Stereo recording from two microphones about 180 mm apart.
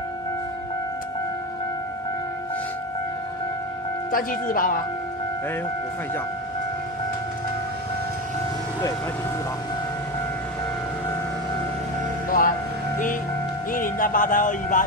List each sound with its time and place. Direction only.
4.1 s speech: 50° left (ahead or behind)
12.3 s speech: 50° left (ahead or behind)
13.7 s speech: 50° left (ahead or behind)